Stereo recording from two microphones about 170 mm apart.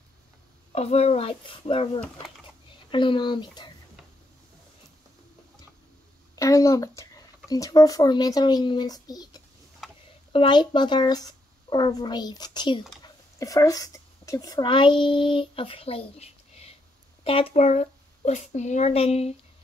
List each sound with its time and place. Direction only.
0.7 s speech: 40° left (ahead or behind)
6.3 s speech: 20° left (ahead or behind); by 19.3 s 35° left (ahead or behind)